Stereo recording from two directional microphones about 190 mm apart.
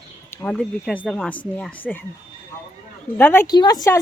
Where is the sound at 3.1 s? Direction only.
10° left (ahead or behind).